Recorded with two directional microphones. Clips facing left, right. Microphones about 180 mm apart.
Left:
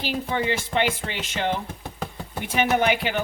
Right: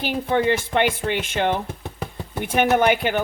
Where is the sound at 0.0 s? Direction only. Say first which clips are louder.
Right 5 dB; 55° right (ahead or behind).